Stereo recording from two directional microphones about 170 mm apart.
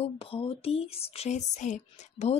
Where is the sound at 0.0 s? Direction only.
35° left (ahead or behind).